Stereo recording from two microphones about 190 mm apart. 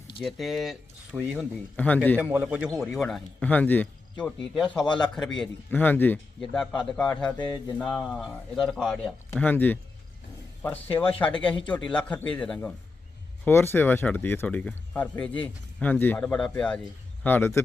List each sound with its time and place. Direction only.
0.2 s speech: centre (ahead or behind)
2.2 s a man's voice: 5° right (ahead or behind)
7.3 s a sound: 20° left (ahead or behind)
7.8 s speech: centre (ahead or behind)
11.4 s speech: 5° left (ahead or behind)